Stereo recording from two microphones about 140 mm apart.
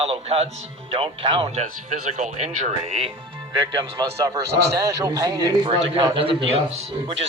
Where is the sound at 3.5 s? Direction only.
35° right (ahead or behind).